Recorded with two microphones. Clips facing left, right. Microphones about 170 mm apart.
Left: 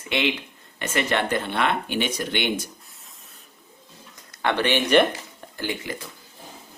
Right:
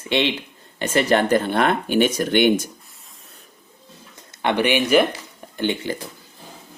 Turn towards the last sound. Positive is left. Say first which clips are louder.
# right 6 dB
turn(degrees=-30)  # may be behind; listen again after turning